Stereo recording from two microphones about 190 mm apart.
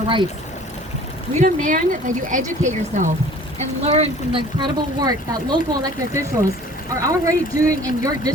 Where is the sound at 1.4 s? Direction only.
45° right (ahead or behind).